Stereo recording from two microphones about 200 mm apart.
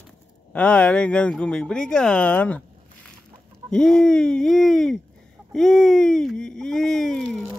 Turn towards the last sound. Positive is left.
turn(degrees=5)  # may be behind; listen again after turning